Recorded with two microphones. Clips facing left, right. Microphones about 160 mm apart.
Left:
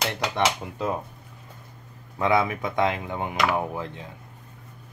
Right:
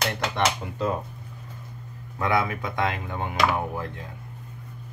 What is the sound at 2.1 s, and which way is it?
Speech, 20° left (ahead or behind).